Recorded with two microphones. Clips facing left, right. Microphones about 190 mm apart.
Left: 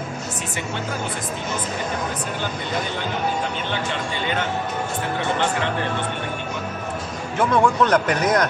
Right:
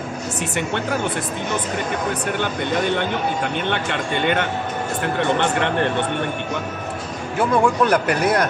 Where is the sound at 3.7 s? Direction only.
60° right (ahead or behind).